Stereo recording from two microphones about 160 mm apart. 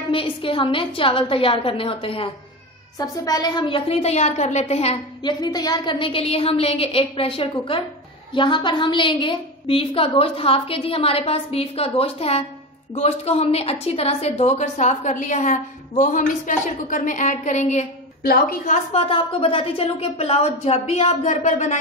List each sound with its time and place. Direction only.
0.1 s a woman's voice: 35° left (ahead or behind)
5.2 s a woman's voice: 25° left (ahead or behind); by 17.8 s 45° left (ahead or behind)
18.7 s a woman's voice: 35° left (ahead or behind)